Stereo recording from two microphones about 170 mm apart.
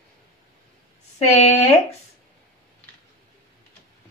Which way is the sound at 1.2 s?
40° left (ahead or behind).